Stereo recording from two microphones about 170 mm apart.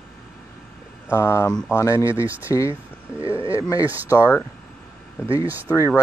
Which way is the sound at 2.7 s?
30° right (ahead or behind).